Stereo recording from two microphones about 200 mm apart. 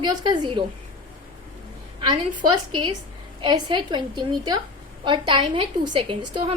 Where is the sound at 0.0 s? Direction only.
20° right (ahead or behind).